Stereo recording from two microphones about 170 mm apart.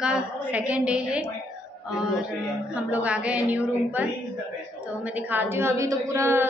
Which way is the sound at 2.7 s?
10° right (ahead or behind).